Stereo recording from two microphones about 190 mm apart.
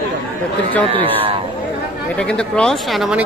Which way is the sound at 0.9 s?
30° right (ahead or behind).